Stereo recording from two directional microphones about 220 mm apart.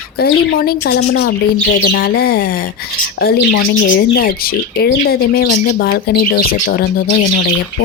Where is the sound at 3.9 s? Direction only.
40° left (ahead or behind).